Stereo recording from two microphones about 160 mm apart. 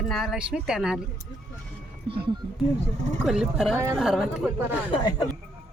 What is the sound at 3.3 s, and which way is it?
Speech, 5° right (ahead or behind).